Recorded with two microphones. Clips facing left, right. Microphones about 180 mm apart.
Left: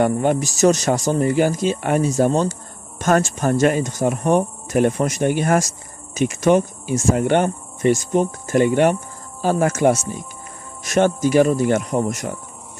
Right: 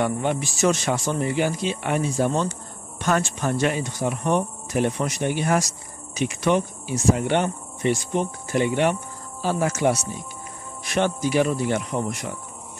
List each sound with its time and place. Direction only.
0.0 s speech: 45° left (ahead or behind)